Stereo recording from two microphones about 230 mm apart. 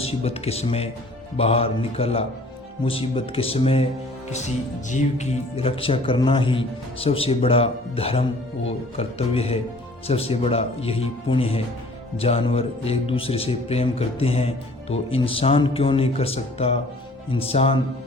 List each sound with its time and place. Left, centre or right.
0.0 s speech: left